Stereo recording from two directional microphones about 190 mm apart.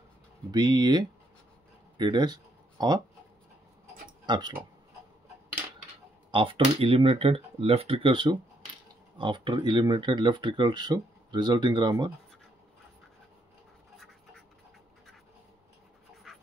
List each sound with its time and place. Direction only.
0.5 s speech: 20° right (ahead or behind)
4.3 s speech: 20° right (ahead or behind)
6.3 s speech: 25° right (ahead or behind)
16.3 s dog: centre (ahead or behind)